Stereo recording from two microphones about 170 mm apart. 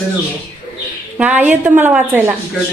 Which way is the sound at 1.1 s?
10° right (ahead or behind).